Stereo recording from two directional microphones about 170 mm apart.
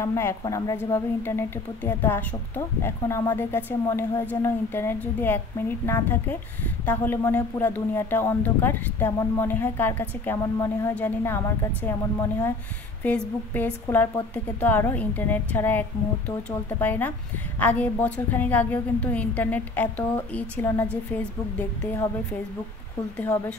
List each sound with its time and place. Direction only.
0.0 s a woman's voice: 15° left (ahead or behind)